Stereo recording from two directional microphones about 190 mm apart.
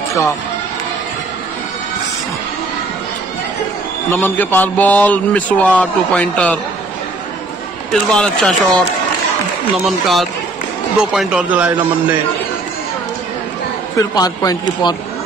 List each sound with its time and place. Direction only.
4.1 s speech: 10° left (ahead or behind)
7.9 s speech: 5° left (ahead or behind)
9.8 s a man's voice: centre (ahead or behind)
13.9 s a man's voice: 20° left (ahead or behind)